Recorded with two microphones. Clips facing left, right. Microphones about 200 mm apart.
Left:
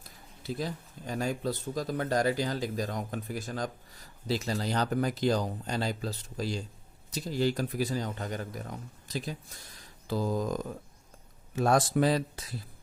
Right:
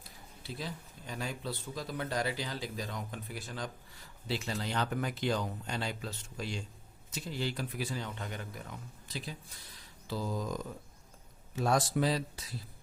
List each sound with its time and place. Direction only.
0.4 s speech: 45° left (ahead or behind)